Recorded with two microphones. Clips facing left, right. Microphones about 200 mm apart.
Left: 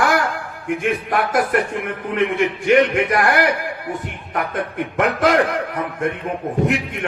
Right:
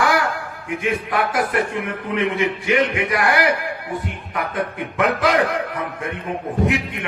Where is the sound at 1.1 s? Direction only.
45° left (ahead or behind).